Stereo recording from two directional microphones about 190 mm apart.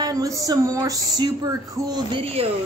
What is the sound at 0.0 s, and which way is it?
A woman's voice, 20° right (ahead or behind).